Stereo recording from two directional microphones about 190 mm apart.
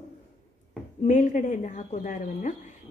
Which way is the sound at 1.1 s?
40° left (ahead or behind).